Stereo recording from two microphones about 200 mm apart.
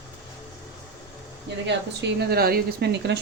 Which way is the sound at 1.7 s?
55° right (ahead or behind).